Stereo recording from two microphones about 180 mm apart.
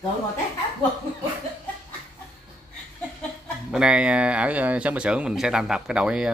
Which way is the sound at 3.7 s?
5° right (ahead or behind).